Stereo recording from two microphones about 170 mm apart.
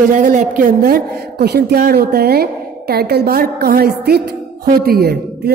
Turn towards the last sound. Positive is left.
turn(degrees=-65)  # may be behind; listen again after turning